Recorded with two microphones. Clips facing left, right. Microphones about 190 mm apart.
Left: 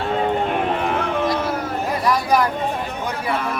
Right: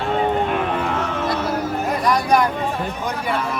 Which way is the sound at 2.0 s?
5° left (ahead or behind).